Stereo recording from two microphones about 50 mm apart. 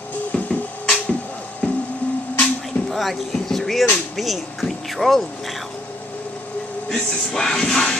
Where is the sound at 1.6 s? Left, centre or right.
Left.